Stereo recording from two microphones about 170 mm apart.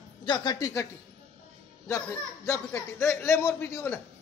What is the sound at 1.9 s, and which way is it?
A man's voice, 15° left (ahead or behind).